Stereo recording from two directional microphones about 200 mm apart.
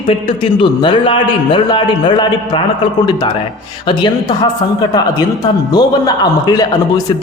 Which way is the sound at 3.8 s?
25° left (ahead or behind).